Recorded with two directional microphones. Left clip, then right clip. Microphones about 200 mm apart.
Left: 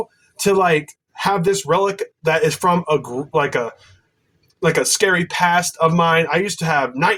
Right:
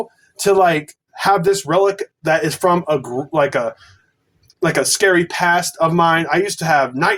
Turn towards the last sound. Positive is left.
turn(degrees=-20)  # may be behind; listen again after turning